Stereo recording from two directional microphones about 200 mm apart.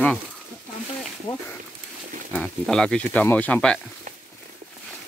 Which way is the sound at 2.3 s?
5° left (ahead or behind).